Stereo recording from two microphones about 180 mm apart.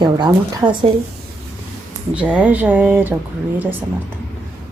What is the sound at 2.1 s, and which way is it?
Speech, 5° right (ahead or behind).